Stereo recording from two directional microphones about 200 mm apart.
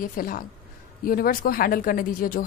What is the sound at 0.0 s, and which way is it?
Speech, 45° left (ahead or behind).